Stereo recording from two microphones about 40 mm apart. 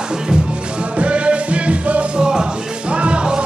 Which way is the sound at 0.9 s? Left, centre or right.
Right.